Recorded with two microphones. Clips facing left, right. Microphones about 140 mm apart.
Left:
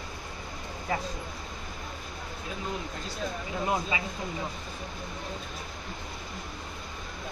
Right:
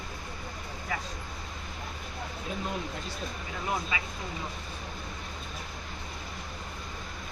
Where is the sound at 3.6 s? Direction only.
25° left (ahead or behind).